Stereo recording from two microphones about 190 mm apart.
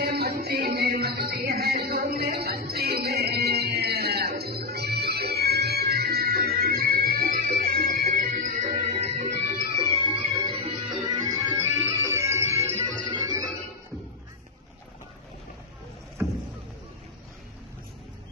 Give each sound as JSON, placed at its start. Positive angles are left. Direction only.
{"t": 0.0, "sound": "music", "side_deg": -55}